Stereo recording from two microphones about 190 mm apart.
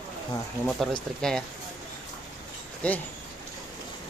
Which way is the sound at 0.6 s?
Centre (ahead or behind).